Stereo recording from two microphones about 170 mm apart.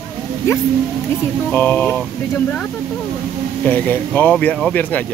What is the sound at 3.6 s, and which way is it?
Speech, 10° left (ahead or behind).